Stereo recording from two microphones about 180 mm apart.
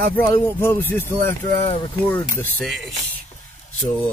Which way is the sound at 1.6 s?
30° left (ahead or behind).